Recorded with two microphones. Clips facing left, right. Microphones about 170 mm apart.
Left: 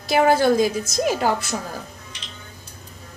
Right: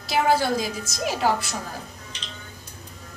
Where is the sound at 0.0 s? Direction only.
55° left (ahead or behind).